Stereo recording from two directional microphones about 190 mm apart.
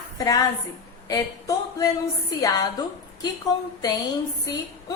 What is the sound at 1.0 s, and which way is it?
A woman's voice, 20° left (ahead or behind).